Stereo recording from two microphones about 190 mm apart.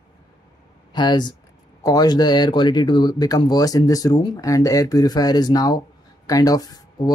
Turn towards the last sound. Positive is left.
turn(degrees=20)  # may be behind; listen again after turning